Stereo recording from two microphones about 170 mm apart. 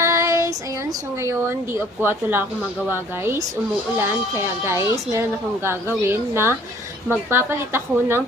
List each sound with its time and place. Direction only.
0.0 s child singing: 15° right (ahead or behind)
1.2 s a woman's voice: 15° right (ahead or behind)
4.6 s a woman's voice: 15° right (ahead or behind)